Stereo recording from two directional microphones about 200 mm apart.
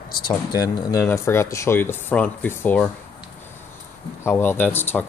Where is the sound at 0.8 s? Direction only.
15° left (ahead or behind).